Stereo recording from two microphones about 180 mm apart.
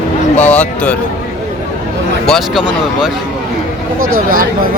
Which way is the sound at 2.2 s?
Centre (ahead or behind).